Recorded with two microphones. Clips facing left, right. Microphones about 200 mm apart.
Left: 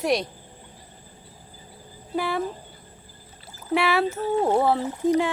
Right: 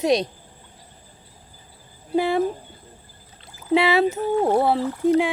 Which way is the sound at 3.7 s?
20° right (ahead or behind).